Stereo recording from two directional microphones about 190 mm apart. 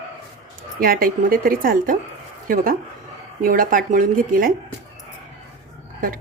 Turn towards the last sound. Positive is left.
turn(degrees=-45)  # may be behind; listen again after turning